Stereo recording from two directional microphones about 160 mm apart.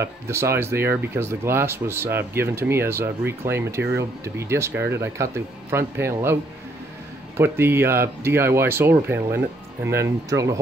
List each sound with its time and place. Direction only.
0.0 s speech: 15° right (ahead or behind)
7.3 s speech: 15° right (ahead or behind)